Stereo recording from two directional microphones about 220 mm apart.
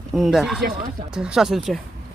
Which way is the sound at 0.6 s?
40° right (ahead or behind).